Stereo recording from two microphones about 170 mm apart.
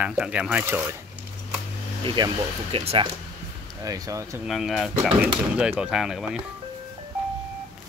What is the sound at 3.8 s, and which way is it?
Speech, 20° right (ahead or behind).